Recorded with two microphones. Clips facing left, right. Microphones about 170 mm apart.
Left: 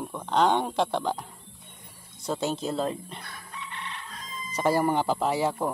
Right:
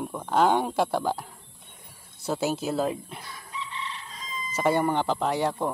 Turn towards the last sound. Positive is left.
turn(degrees=0)  # may be behind; listen again after turning